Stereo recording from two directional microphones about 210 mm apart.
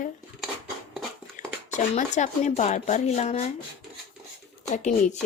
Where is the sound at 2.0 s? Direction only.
35° left (ahead or behind).